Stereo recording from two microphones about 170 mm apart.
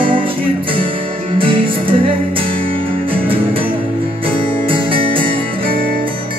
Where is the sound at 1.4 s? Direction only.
30° right (ahead or behind).